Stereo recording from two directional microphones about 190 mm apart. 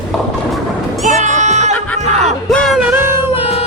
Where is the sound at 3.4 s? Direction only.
30° left (ahead or behind).